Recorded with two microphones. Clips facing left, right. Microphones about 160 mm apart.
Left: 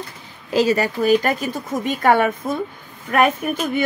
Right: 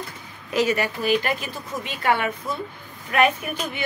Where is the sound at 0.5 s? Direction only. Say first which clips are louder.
Left 4 dB; 35° left (ahead or behind).